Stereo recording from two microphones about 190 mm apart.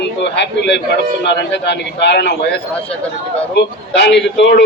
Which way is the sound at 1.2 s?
65° left (ahead or behind).